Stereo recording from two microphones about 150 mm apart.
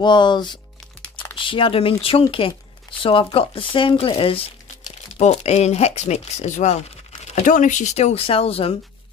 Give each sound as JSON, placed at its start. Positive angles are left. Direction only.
{"t": 0.0, "sound": "speech", "side_deg": 30}